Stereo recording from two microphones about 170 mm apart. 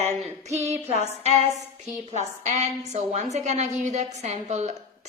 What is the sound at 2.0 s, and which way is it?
A woman's voice, 40° right (ahead or behind).